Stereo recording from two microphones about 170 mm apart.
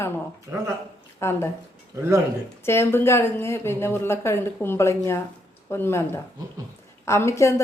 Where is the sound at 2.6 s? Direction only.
15° left (ahead or behind).